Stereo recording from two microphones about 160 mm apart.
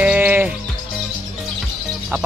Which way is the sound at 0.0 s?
10° right (ahead or behind).